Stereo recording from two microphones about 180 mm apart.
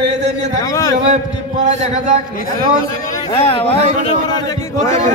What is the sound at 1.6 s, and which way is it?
Speech, 45° right (ahead or behind).